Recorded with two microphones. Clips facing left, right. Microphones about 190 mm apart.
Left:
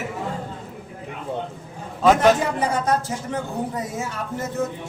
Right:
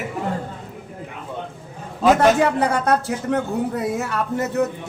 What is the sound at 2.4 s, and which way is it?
Speech, 65° right (ahead or behind).